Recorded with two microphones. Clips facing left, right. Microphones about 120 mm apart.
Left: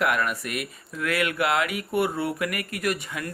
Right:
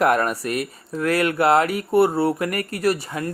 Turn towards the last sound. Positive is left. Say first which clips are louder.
# right 6 dB
turn(degrees=-35)  # may be behind; listen again after turning